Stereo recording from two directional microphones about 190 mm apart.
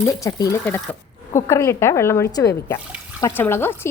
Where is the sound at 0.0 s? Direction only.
15° left (ahead or behind).